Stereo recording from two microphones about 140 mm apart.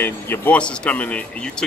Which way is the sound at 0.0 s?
15° left (ahead or behind).